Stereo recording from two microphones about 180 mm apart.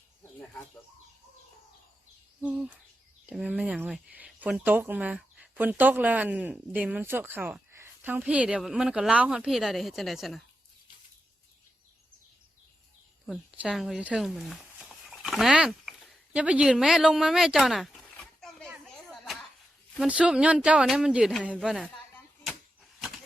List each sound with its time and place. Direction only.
2.4 s speech: 5° right (ahead or behind)
13.2 s speech: centre (ahead or behind)
19.1 s a sound: centre (ahead or behind)
20.1 s speech: 5° right (ahead or behind)